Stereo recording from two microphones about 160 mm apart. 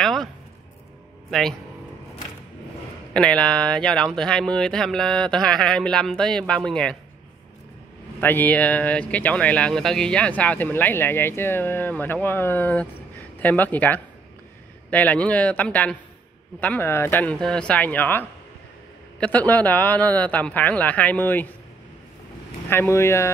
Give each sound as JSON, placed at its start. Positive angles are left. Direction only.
{"t": 0.0, "sound": "a sound", "side_deg": 5}
{"t": 3.1, "sound": "speech", "side_deg": 5}
{"t": 8.2, "sound": "speech", "side_deg": 10}
{"t": 22.7, "sound": "speech", "side_deg": 15}